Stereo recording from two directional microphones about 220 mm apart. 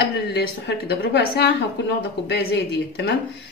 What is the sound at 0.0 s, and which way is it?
A woman's voice, 50° left (ahead or behind).